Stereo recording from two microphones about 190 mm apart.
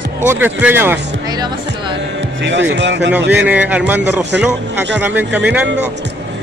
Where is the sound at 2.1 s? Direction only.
70° right (ahead or behind).